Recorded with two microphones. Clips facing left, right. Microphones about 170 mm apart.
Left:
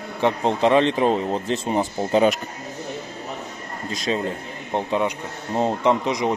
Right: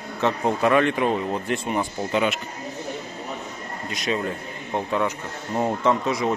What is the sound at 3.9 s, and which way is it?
Speech, 30° left (ahead or behind).